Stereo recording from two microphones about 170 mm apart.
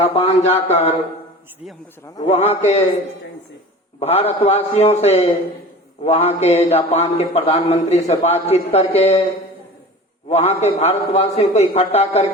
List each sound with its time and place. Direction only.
0.0 s a man's voice: 35° left (ahead or behind)
2.5 s a man's voice: 40° left (ahead or behind)
4.0 s a man's voice: 40° left (ahead or behind)
10.2 s a man's voice: 40° left (ahead or behind)